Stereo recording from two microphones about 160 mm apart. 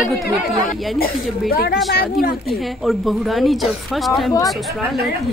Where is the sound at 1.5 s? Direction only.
70° left (ahead or behind).